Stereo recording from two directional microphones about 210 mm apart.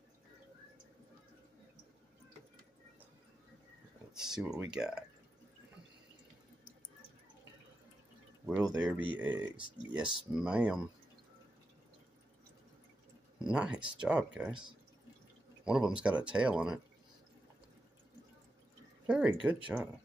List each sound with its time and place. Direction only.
4.1 s speech: 5° right (ahead or behind)
8.5 s speech: 5° right (ahead or behind)
13.4 s speech: 5° right (ahead or behind)
13.7 s speech: 20° right (ahead or behind)
14.0 s speech: 5° right (ahead or behind)
15.6 s speech: 5° right (ahead or behind)
19.0 s a sound: 5° right (ahead or behind)